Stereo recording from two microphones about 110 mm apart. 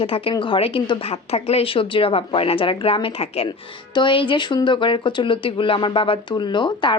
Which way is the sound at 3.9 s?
50° left (ahead or behind).